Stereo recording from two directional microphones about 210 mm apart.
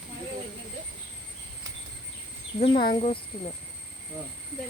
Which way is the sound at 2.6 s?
25° left (ahead or behind).